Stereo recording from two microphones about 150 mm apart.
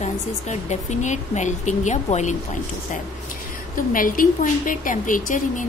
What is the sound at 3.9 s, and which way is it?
A woman's voice, 65° left (ahead or behind).